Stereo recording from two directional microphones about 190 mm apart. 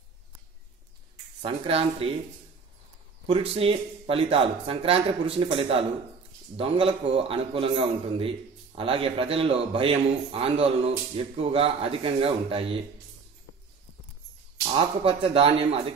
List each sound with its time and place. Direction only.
1.4 s speech: 30° right (ahead or behind)
3.3 s a man's voice: 30° right (ahead or behind)
14.7 s a man's voice: 30° right (ahead or behind)